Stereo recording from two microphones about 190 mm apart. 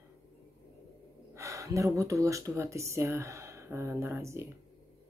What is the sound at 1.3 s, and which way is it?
Speech, 15° right (ahead or behind).